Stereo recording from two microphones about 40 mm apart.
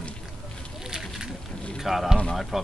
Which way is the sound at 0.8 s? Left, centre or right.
Centre.